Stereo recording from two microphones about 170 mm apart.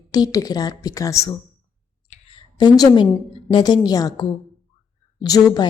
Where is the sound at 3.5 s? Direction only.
25° left (ahead or behind).